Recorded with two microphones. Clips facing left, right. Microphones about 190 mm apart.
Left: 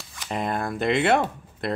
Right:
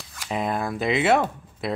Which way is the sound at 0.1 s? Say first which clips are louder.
Right 1 dB; centre (ahead or behind).